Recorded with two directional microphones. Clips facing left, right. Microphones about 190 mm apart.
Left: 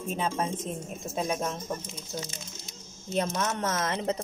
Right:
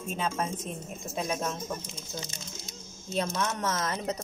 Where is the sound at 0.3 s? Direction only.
30° left (ahead or behind).